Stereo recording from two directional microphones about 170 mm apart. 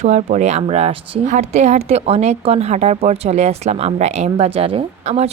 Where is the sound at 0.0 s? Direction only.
45° right (ahead or behind).